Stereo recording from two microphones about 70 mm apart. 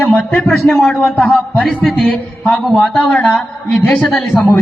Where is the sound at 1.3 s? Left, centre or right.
Centre.